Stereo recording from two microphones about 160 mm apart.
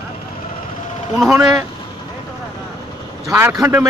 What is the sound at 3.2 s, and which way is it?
Speech, 20° right (ahead or behind).